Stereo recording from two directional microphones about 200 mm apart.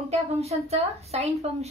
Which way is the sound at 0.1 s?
30° right (ahead or behind).